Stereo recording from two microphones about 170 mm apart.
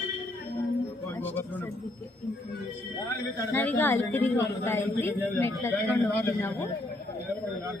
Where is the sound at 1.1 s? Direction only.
10° left (ahead or behind).